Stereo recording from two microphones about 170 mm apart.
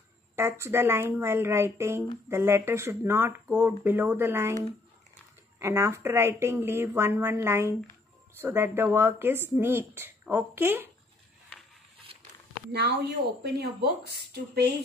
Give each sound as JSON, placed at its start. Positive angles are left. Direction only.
{"t": 0.4, "sound": "speech", "side_deg": -15}
{"t": 5.6, "sound": "speech", "side_deg": -15}
{"t": 12.7, "sound": "speech", "side_deg": -75}